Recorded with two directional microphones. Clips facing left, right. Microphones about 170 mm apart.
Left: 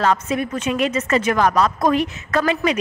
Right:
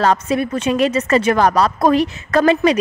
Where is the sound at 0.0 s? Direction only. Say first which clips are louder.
Right 3 dB; 35° right (ahead or behind).